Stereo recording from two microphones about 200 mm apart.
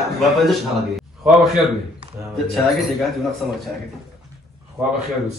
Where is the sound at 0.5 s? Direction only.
Centre (ahead or behind).